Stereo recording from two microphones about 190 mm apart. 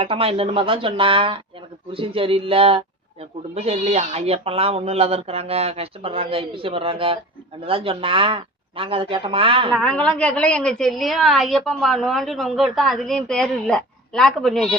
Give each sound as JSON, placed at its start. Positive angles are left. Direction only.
{"t": 0.0, "sound": "speech", "side_deg": -30}
{"t": 9.7, "sound": "a woman's voice", "side_deg": 5}